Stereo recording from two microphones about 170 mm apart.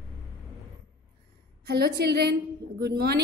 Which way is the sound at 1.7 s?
70° right (ahead or behind).